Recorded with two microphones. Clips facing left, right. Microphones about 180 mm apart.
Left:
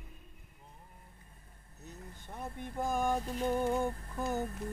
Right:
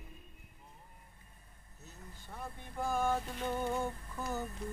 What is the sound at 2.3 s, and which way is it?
Speech, 20° left (ahead or behind).